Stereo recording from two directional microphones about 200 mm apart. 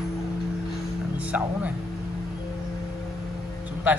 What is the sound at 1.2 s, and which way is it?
Speech, 5° right (ahead or behind).